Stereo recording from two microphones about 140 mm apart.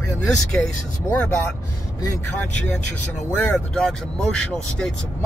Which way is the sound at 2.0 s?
25° left (ahead or behind).